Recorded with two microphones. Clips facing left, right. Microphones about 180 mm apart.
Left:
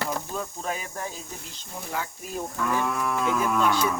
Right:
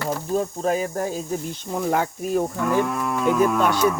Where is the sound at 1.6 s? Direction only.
65° right (ahead or behind).